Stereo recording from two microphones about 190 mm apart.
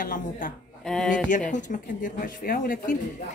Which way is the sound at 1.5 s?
45° left (ahead or behind).